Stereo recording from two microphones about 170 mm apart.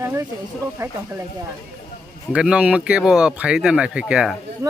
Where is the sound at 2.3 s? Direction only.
5° right (ahead or behind).